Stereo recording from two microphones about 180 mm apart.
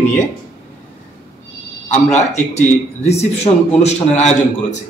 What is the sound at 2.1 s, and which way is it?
A man's voice, 40° left (ahead or behind).